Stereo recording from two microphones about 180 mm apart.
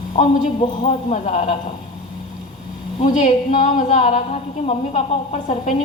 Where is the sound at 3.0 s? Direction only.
45° left (ahead or behind).